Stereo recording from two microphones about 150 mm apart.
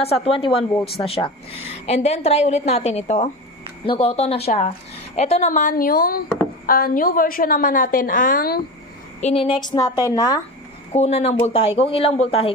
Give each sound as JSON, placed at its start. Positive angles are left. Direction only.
{"t": 0.0, "sound": "a woman's voice", "side_deg": 40}
{"t": 9.2, "sound": "a woman's voice", "side_deg": 40}
{"t": 10.9, "sound": "speech", "side_deg": 45}